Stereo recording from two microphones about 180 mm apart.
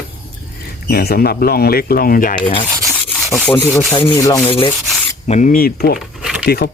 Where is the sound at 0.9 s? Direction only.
60° left (ahead or behind).